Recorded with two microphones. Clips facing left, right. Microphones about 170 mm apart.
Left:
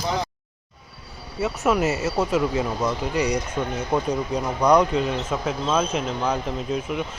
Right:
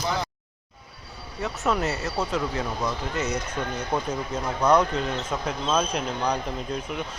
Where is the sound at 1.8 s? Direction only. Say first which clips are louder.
Left 5 dB; 20° left (ahead or behind).